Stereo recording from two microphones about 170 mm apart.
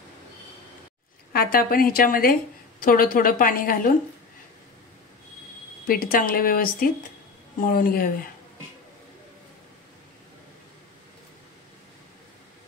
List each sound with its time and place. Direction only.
1.3 s a woman's voice: 60° left (ahead or behind)
5.9 s a woman's voice: 55° left (ahead or behind)